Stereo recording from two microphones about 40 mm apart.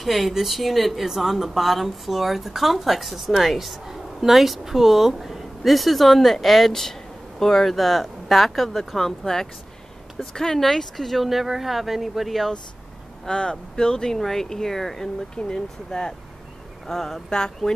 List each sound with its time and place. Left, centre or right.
0.0 s a woman's voice: centre
13.3 s speech: centre